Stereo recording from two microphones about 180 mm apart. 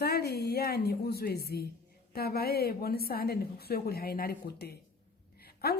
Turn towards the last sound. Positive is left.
turn(degrees=60)  # may be behind; listen again after turning